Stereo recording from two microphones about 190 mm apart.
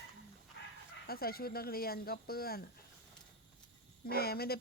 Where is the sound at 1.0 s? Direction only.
50° left (ahead or behind).